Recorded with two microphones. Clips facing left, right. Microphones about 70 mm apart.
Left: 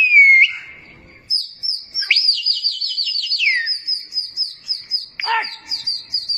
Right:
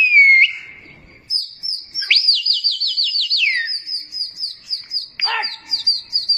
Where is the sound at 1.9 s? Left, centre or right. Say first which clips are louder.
Even; left.